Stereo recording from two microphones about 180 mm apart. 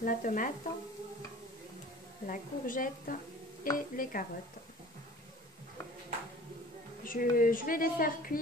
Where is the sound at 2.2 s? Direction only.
50° left (ahead or behind).